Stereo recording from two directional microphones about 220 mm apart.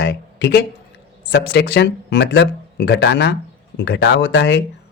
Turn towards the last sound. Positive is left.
turn(degrees=50)  # may be behind; listen again after turning